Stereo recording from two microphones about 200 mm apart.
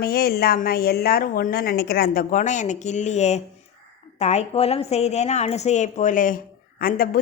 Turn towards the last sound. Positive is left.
turn(degrees=45)  # may be behind; listen again after turning